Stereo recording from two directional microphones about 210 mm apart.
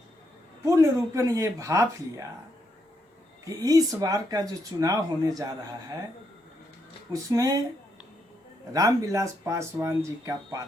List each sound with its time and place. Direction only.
0.6 s speech: 15° right (ahead or behind)
3.4 s speech: 15° right (ahead or behind)
7.1 s speech: 15° right (ahead or behind)
8.7 s speech: 15° right (ahead or behind)